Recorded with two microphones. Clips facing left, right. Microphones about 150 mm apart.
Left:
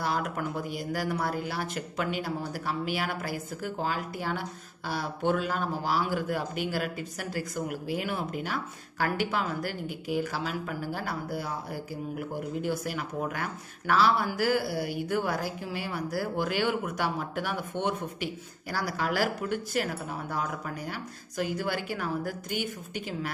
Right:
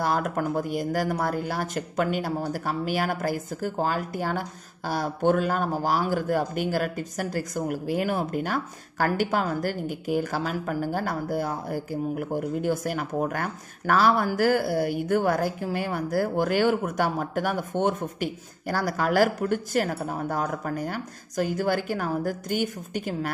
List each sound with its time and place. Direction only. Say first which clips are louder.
0.0 s speech: right 5 dB; 45° right (ahead or behind)